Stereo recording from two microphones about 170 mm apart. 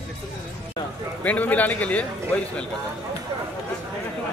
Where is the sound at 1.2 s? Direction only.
10° left (ahead or behind).